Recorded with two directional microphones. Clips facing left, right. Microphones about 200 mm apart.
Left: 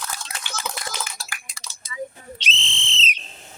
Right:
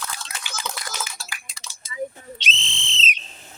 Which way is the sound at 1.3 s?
45° left (ahead or behind).